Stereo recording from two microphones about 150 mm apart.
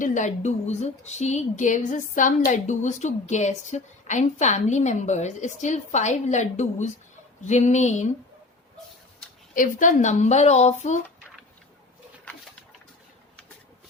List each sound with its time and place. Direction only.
0.0 s speech: 55° left (ahead or behind)
9.6 s speech: 60° left (ahead or behind)